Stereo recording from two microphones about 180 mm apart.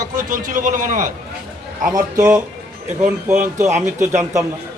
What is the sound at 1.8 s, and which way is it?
A man's voice, 20° right (ahead or behind).